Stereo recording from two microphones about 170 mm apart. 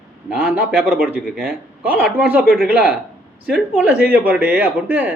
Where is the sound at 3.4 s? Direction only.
5° right (ahead or behind).